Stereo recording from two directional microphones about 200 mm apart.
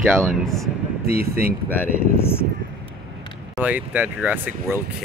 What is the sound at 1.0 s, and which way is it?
Speech, 50° right (ahead or behind).